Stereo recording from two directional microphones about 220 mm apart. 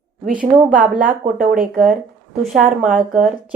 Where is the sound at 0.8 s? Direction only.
35° right (ahead or behind).